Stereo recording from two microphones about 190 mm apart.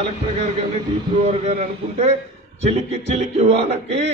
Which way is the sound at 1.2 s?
35° right (ahead or behind).